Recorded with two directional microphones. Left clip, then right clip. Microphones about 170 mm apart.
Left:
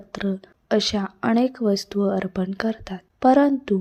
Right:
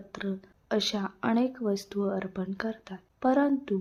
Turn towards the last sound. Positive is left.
turn(degrees=30)  # may be behind; listen again after turning